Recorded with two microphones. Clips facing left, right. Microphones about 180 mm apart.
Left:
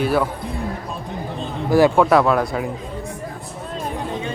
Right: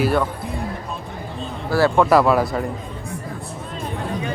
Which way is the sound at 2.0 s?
Centre (ahead or behind).